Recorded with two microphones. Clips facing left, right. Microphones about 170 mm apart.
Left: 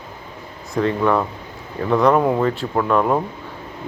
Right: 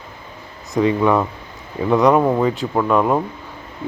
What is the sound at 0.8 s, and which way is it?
Speech, 5° right (ahead or behind).